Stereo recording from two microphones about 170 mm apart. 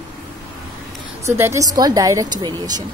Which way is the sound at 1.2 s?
15° right (ahead or behind).